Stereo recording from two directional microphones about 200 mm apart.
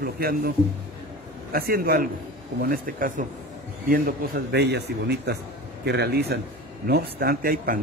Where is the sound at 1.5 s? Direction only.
50° right (ahead or behind).